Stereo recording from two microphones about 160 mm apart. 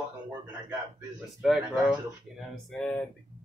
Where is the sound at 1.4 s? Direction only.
Centre (ahead or behind).